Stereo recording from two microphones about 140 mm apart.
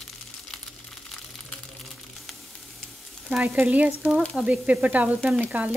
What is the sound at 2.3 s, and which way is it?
Sizzle, centre (ahead or behind).